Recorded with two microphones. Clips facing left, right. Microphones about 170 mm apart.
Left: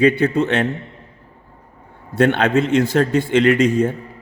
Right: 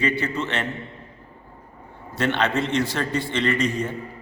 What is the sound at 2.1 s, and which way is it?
A man's voice, 55° left (ahead or behind).